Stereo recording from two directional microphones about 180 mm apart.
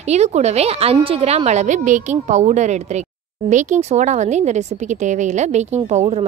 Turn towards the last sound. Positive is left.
turn(degrees=-35)  # may be behind; listen again after turning